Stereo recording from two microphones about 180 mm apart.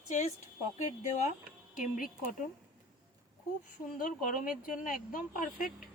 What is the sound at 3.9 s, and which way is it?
Speech, 45° left (ahead or behind).